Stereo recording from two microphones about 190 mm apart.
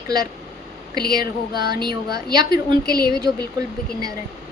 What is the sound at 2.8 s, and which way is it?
Speech, 55° left (ahead or behind).